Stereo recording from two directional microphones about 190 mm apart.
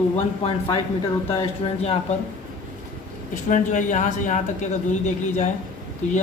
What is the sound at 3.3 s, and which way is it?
Speech, 40° left (ahead or behind).